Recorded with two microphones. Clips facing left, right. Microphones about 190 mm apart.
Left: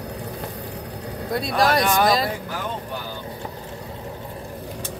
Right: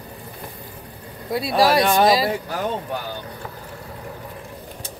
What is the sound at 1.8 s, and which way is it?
Speech, 25° right (ahead or behind).